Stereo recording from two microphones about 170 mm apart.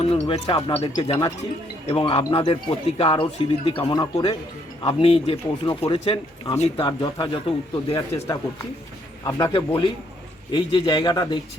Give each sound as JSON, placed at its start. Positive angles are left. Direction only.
{"t": 0.0, "sound": "a man's voice", "side_deg": 35}
{"t": 9.2, "sound": "a man's voice", "side_deg": 25}